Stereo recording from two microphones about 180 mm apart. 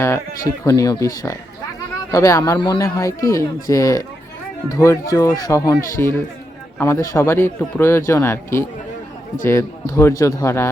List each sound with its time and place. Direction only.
0.4 s a man's voice: 15° left (ahead or behind)